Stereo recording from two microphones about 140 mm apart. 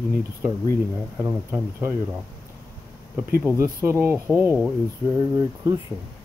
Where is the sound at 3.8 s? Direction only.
20° right (ahead or behind).